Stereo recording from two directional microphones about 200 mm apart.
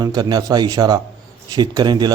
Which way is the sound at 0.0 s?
20° right (ahead or behind).